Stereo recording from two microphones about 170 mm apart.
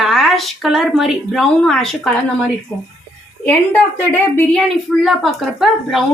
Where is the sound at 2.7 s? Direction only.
10° left (ahead or behind).